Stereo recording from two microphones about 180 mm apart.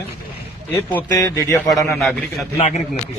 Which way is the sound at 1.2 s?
15° left (ahead or behind).